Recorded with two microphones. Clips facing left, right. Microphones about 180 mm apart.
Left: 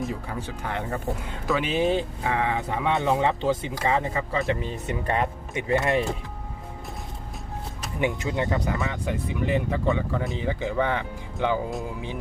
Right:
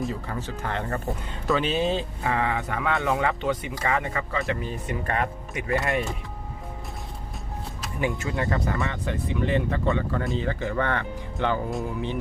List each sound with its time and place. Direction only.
0.1 s speech: 10° left (ahead or behind)
7.9 s speech: 20° left (ahead or behind)